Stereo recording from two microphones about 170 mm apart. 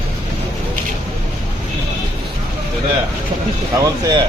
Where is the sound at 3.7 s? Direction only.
20° right (ahead or behind).